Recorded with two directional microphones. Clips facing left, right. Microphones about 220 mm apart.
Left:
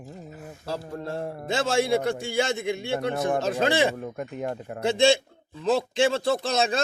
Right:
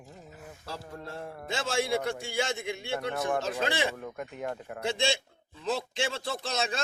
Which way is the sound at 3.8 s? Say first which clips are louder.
Left 6 dB; 30° left (ahead or behind).